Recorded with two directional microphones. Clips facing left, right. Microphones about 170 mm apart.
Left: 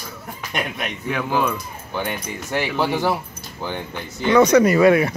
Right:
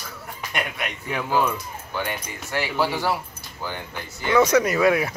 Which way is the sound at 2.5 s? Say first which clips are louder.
Left 3 dB; 20° left (ahead or behind).